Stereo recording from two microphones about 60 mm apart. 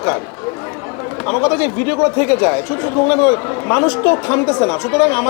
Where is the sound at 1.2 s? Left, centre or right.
Left.